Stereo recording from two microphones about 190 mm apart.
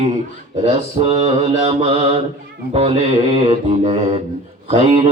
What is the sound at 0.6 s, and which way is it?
Mantra, 30° right (ahead or behind).